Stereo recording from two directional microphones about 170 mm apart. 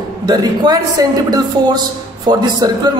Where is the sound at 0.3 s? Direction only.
25° right (ahead or behind).